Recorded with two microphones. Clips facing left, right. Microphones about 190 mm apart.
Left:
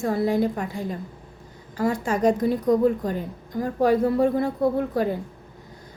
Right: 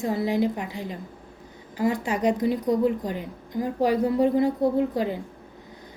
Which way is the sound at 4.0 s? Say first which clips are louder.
Even; 15° right (ahead or behind).